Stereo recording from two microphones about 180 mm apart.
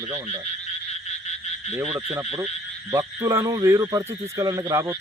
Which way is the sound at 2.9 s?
15° right (ahead or behind).